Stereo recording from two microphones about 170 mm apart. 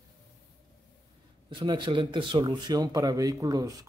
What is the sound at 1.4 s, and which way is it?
A man's voice, 25° right (ahead or behind).